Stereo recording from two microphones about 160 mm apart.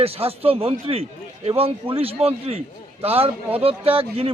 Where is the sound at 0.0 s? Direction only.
40° right (ahead or behind).